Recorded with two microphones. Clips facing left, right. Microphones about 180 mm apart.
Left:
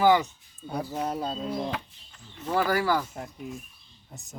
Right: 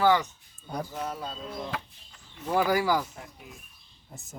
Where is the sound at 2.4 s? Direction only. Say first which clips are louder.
Even; 10° right (ahead or behind).